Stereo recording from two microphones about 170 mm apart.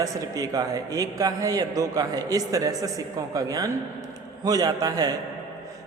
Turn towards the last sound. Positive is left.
turn(degrees=-20)  # may be behind; listen again after turning